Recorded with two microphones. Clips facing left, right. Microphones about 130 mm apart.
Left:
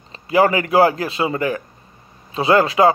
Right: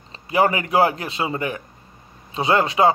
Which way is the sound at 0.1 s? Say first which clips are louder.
Left 3 dB; 25° right (ahead or behind).